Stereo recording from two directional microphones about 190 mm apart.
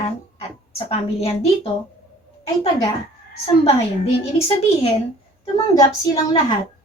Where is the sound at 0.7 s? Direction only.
30° left (ahead or behind).